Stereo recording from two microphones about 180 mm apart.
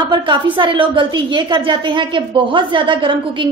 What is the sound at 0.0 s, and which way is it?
A woman's voice, 25° right (ahead or behind).